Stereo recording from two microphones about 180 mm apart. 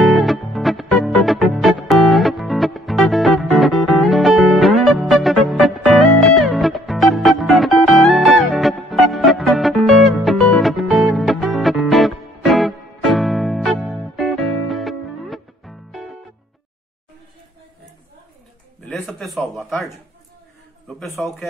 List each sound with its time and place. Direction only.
0.0 s music: centre (ahead or behind)
18.9 s a sound: 5° left (ahead or behind)
21.0 s a man's voice: centre (ahead or behind)